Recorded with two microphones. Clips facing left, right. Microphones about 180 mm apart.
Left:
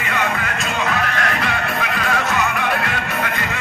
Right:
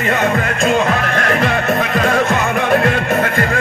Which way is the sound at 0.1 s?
45° right (ahead or behind).